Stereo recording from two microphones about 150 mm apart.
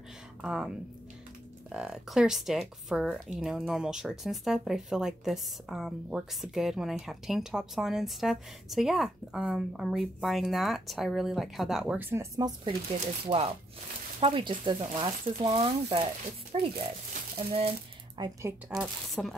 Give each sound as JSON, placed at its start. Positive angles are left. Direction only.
{"t": 0.4, "sound": "speech", "side_deg": -5}
{"t": 12.0, "sound": "speech", "side_deg": -15}
{"t": 13.0, "sound": "speech", "side_deg": -35}
{"t": 16.5, "sound": "speech", "side_deg": -45}
{"t": 17.4, "sound": "a sound", "side_deg": -40}
{"t": 18.7, "sound": "speech", "side_deg": 0}